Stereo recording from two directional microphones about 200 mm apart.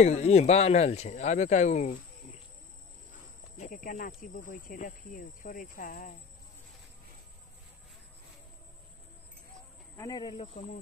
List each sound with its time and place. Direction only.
0.0 s speech: 35° left (ahead or behind)
3.5 s speech: 40° left (ahead or behind)
9.9 s speech: 20° left (ahead or behind)